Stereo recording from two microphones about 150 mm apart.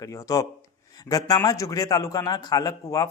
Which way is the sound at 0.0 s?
20° left (ahead or behind).